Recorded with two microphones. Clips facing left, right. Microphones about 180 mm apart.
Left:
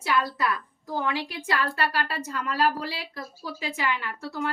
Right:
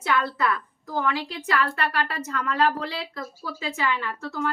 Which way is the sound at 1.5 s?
30° left (ahead or behind).